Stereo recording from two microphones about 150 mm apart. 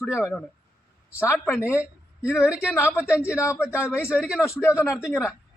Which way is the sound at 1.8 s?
5° right (ahead or behind).